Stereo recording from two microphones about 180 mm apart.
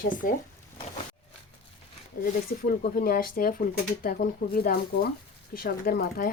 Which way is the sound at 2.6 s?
55° left (ahead or behind).